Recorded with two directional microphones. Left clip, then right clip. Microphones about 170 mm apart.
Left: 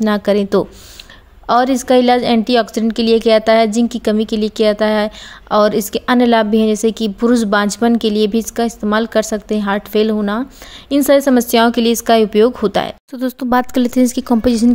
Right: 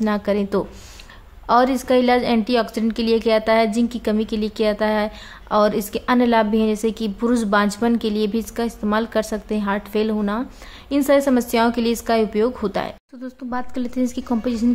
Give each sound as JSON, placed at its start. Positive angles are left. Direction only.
{"t": 0.0, "sound": "a woman's voice", "side_deg": 30}